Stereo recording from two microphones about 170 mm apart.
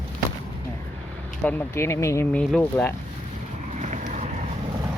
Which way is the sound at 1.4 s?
10° left (ahead or behind).